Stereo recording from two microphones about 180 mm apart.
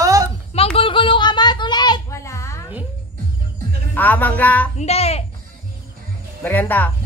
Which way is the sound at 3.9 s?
10° left (ahead or behind).